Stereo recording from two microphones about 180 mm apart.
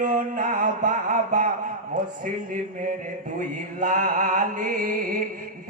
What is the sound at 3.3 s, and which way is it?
Mantra, 50° right (ahead or behind).